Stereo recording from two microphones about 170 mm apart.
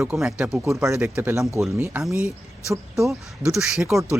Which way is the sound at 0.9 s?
15° right (ahead or behind).